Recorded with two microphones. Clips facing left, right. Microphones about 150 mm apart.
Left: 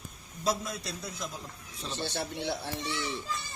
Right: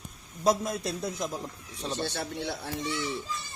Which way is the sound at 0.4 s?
50° right (ahead or behind).